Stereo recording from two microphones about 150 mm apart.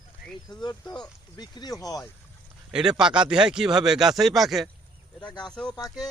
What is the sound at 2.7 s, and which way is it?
Speech, 5° right (ahead or behind).